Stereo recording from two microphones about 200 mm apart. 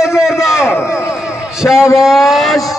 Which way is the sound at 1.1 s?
5° right (ahead or behind).